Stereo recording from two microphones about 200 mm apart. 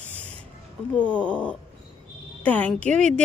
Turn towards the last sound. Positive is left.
turn(degrees=5)  # may be behind; listen again after turning